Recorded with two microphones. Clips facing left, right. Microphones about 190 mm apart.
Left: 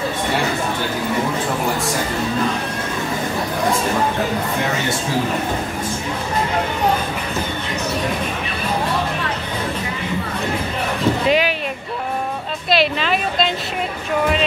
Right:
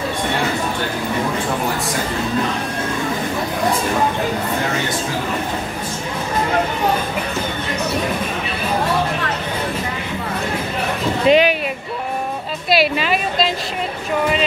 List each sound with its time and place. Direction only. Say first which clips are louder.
11.2 s speech: right 7 dB; 25° right (ahead or behind)
12.6 s a woman's voice: right 1 dB; 5° right (ahead or behind)